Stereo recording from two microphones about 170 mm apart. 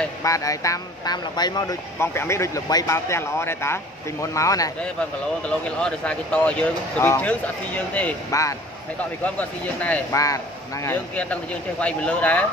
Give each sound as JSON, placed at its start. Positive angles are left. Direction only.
{"t": 0.2, "sound": "speech", "side_deg": 20}
{"t": 5.5, "sound": "speech", "side_deg": 5}
{"t": 8.3, "sound": "speech", "side_deg": 20}
{"t": 9.2, "sound": "speech", "side_deg": 10}
{"t": 10.1, "sound": "speech", "side_deg": 20}
{"t": 11.8, "sound": "speech", "side_deg": 5}